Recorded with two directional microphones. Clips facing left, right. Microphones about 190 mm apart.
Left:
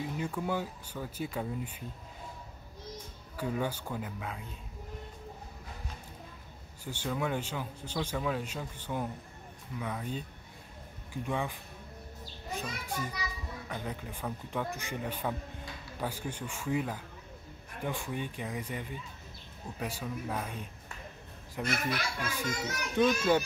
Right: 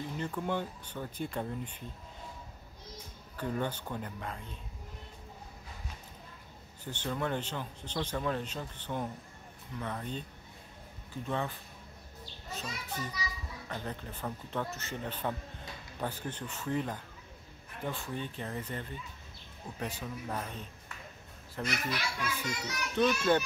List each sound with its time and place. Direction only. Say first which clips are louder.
0.0 s speech: left 1 dB; 10° left (ahead or behind)
3.3 s speech: left 1 dB; 10° left (ahead or behind)
6.8 s speech: left 1 dB; 10° left (ahead or behind)
11.2 s speech: left 1 dB; 10° left (ahead or behind)
12.5 s speech: left 3 dB; 10° left (ahead or behind)
21.6 s a child's voice: left 2 dB; 55° left (ahead or behind)
22.9 s speech: left 1 dB; 10° left (ahead or behind)